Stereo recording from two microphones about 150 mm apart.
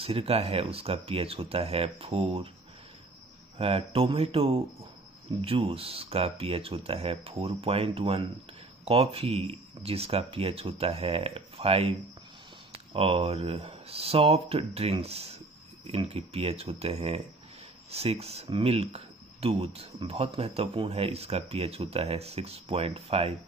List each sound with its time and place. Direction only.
0.0 s speech: 40° right (ahead or behind)
3.5 s speech: 40° right (ahead or behind)
12.9 s speech: 40° right (ahead or behind)